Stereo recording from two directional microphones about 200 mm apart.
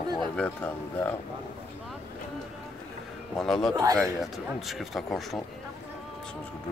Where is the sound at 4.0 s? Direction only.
Centre (ahead or behind).